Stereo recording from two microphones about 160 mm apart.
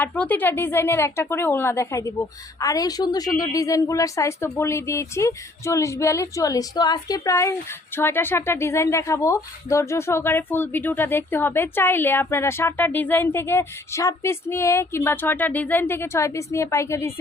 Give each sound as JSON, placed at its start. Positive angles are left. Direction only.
{"t": 0.0, "sound": "a woman's voice", "side_deg": 10}